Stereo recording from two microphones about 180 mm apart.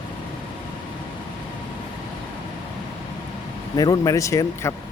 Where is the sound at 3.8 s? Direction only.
20° left (ahead or behind).